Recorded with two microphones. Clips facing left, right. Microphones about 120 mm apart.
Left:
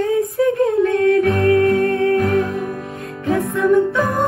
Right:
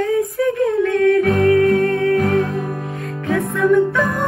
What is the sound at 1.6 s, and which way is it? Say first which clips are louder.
Music: even; 25° left (ahead or behind).